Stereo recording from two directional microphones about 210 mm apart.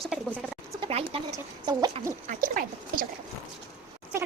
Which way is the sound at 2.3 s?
40° right (ahead or behind).